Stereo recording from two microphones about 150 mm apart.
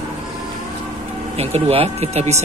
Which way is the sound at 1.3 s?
45° right (ahead or behind).